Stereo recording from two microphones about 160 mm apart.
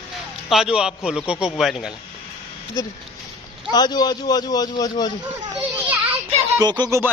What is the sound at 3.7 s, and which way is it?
Speech, 25° left (ahead or behind).